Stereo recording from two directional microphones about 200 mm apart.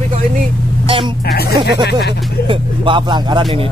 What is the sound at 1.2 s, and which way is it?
Speech, 50° left (ahead or behind).